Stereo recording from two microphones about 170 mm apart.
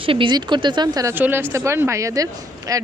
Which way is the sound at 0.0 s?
30° right (ahead or behind).